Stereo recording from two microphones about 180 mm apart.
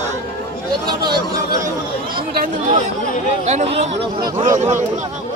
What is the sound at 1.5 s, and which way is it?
Speech, 20° right (ahead or behind).